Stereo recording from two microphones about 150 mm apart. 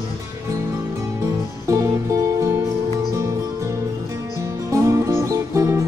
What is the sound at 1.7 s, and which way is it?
Music, 20° right (ahead or behind).